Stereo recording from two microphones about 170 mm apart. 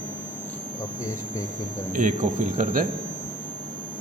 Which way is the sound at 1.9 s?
50° right (ahead or behind).